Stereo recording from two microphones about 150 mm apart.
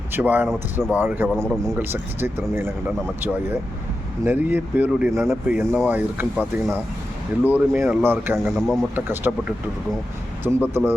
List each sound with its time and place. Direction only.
0.1 s speech: 10° right (ahead or behind)
8.4 s speech: centre (ahead or behind)
9.0 s speech: 15° right (ahead or behind)